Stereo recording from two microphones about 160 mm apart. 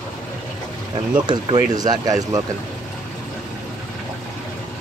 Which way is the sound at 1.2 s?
30° right (ahead or behind).